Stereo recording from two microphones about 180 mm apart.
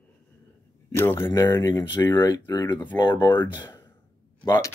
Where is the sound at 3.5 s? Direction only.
25° left (ahead or behind).